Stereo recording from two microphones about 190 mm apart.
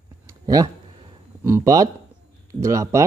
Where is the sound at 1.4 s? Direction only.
15° right (ahead or behind).